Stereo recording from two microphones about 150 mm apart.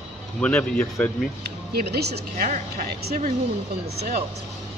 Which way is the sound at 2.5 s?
60° right (ahead or behind).